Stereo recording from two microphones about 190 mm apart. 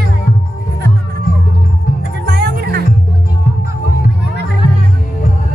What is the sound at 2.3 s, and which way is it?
Music, 60° right (ahead or behind).